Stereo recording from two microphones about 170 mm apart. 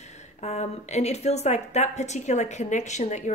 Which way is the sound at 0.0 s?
40° left (ahead or behind).